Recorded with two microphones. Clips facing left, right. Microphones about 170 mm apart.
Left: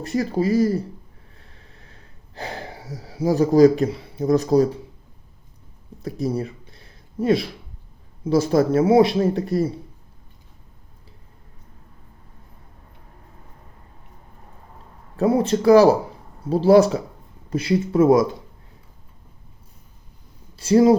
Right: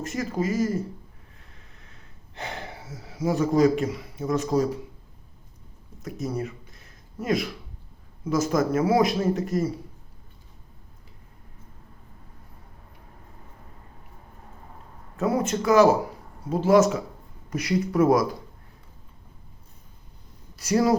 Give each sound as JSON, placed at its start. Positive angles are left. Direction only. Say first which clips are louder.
{"t": 0.0, "sound": "speech", "louder": "left 6 dB", "side_deg": 35}
{"t": 1.4, "sound": "snort", "louder": "left 4 dB", "side_deg": 35}
{"t": 6.0, "sound": "a sound", "louder": "left 5 dB", "side_deg": 35}
{"t": 8.2, "sound": "speech", "louder": "left 5 dB", "side_deg": 30}
{"t": 15.1, "sound": "speech", "louder": "left 6 dB", "side_deg": 30}
{"t": 20.6, "sound": "speech", "louder": "left 7 dB", "side_deg": 30}